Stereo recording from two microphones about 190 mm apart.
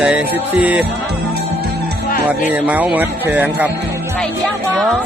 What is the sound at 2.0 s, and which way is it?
Music, 50° left (ahead or behind).